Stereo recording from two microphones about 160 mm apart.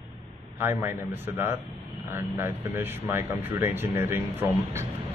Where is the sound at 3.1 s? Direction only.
15° right (ahead or behind).